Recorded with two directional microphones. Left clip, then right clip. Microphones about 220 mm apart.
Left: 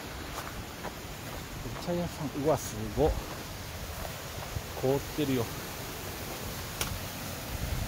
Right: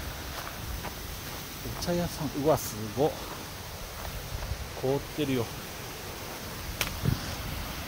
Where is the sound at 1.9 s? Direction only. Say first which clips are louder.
Right 3 dB; 20° right (ahead or behind).